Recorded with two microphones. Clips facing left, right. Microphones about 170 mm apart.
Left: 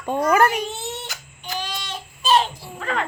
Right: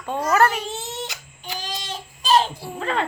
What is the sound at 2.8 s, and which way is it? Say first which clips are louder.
Speech: right 1 dB; 30° right (ahead or behind).